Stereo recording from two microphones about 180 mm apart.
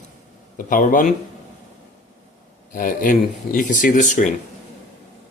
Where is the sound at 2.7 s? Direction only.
50° left (ahead or behind).